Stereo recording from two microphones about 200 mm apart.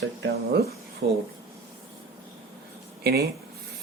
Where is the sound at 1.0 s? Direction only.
55° right (ahead or behind).